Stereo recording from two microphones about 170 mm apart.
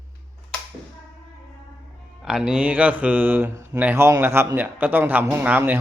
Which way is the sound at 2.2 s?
5° right (ahead or behind).